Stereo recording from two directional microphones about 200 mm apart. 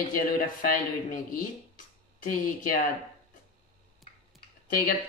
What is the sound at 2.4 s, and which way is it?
Speech, 45° left (ahead or behind).